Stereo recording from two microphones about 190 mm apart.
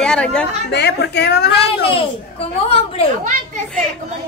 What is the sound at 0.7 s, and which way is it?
Speech, 60° left (ahead or behind).